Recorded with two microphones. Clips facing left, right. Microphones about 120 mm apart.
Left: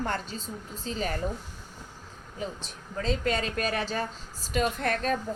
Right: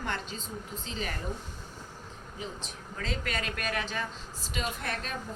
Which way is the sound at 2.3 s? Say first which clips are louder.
Left 5 dB; 35° left (ahead or behind).